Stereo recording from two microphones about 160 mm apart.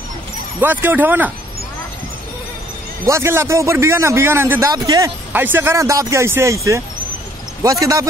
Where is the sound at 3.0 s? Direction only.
15° right (ahead or behind).